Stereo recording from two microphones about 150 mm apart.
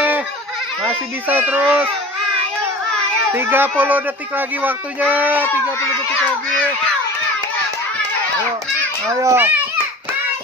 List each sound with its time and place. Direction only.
0.8 s speech: 10° right (ahead or behind)
3.3 s speech: 15° right (ahead or behind)
9.1 s a child's voice: 20° right (ahead or behind)